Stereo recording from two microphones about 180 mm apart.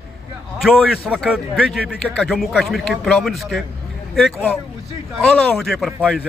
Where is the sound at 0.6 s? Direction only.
5° right (ahead or behind).